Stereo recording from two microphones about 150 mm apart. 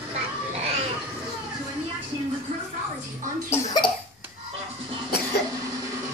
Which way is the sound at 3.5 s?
25° left (ahead or behind).